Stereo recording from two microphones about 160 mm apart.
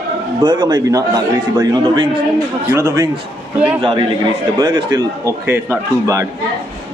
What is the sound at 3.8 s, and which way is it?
A man's voice, 30° right (ahead or behind).